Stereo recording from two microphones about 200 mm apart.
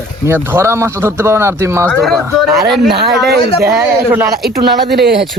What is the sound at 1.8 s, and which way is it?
Speech, 5° left (ahead or behind).